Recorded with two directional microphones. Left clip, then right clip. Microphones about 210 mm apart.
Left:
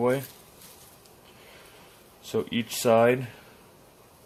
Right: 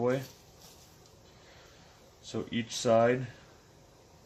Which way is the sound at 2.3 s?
35° left (ahead or behind).